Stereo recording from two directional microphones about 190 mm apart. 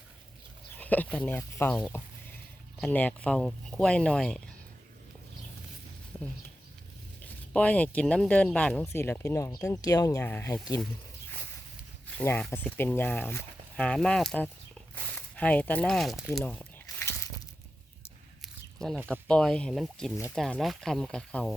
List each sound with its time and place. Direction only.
0.8 s speech: 10° left (ahead or behind)
7.2 s speech: 5° left (ahead or behind)
12.1 s speech: 10° left (ahead or behind)
16.8 s a sound: 15° left (ahead or behind)
18.4 s a sound: centre (ahead or behind)
19.3 s speech: 5° left (ahead or behind)